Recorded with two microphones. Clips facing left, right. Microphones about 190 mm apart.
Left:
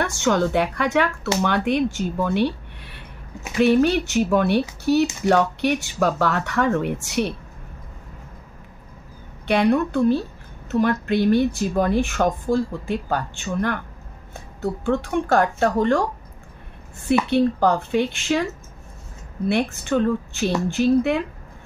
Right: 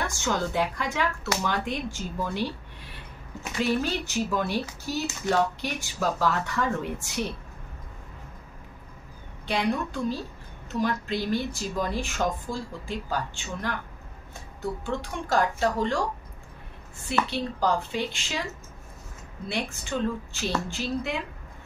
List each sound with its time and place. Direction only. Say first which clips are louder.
0.0 s speech: left 8 dB; 65° left (ahead or behind)
9.5 s speech: left 9 dB; 65° left (ahead or behind)
17.3 s speech: left 8 dB; 60° left (ahead or behind)
19.4 s speech: left 10 dB; 60° left (ahead or behind)